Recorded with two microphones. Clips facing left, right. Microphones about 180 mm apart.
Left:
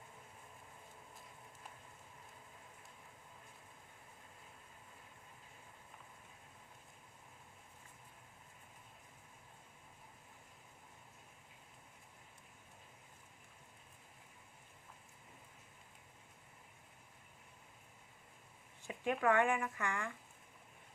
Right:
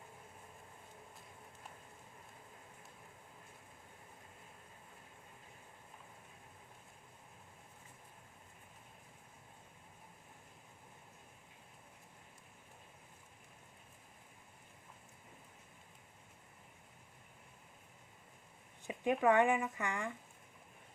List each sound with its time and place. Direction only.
18.9 s speech: 20° right (ahead or behind)